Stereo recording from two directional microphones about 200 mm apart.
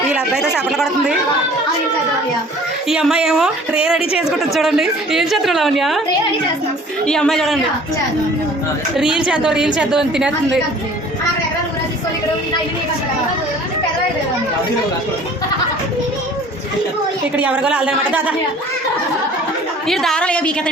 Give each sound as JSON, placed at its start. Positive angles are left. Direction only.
{"t": 0.1, "sound": "a woman's voice", "side_deg": -5}
{"t": 2.9, "sound": "a woman's voice", "side_deg": -5}
{"t": 7.0, "sound": "a woman's voice", "side_deg": 5}
{"t": 9.0, "sound": "a woman's voice", "side_deg": -5}
{"t": 17.3, "sound": "a woman's voice", "side_deg": -5}
{"t": 19.9, "sound": "a woman's voice", "side_deg": 0}